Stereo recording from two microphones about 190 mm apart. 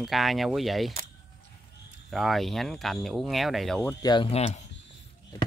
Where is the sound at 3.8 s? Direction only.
20° left (ahead or behind).